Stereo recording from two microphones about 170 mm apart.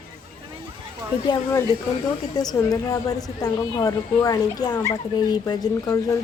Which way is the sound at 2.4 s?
20° left (ahead or behind).